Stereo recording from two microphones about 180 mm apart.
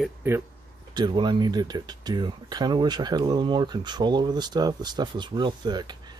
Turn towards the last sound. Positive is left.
turn(degrees=-25)  # may be behind; listen again after turning